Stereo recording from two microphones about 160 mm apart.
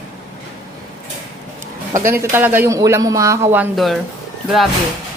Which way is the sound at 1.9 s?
15° right (ahead or behind).